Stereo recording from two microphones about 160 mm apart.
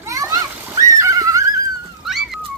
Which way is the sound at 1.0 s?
20° right (ahead or behind).